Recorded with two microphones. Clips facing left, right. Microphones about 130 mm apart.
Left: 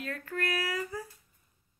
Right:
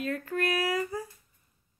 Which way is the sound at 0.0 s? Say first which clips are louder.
Right 5 dB; 20° right (ahead or behind).